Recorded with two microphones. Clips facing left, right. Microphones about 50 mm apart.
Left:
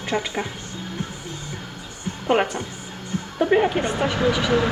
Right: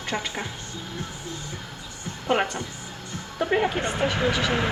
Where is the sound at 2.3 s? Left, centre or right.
Left.